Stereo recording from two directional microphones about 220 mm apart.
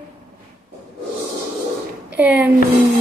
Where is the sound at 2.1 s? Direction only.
10° right (ahead or behind).